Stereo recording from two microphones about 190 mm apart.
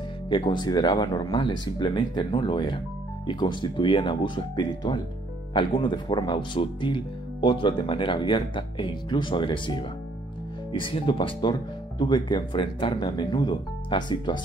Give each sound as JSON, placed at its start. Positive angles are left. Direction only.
{"t": 0.3, "sound": "speech", "side_deg": 25}